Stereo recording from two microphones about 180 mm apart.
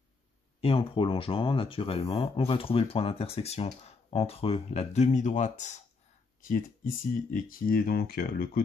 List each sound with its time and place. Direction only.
0.6 s speech: 30° left (ahead or behind); by 8.6 s 55° left (ahead or behind)